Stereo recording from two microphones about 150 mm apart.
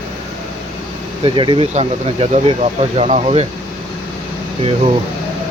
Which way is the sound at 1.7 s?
50° right (ahead or behind).